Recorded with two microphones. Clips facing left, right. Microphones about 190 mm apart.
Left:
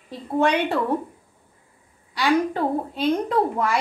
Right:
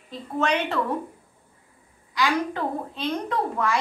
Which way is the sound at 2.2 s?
30° left (ahead or behind).